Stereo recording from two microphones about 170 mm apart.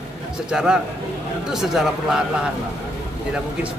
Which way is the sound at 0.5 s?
5° right (ahead or behind).